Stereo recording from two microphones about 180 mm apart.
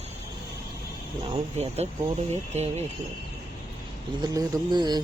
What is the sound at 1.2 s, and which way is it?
Speech, 35° right (ahead or behind).